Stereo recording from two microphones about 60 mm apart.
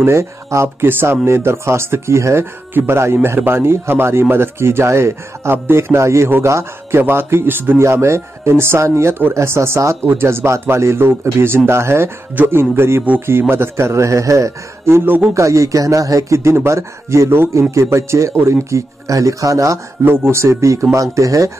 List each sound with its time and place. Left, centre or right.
0.0 s speech: right
0.8 s speech: right
7.8 s speech: right
14.9 s speech: right
15.3 s speech: right
20.2 s speech: right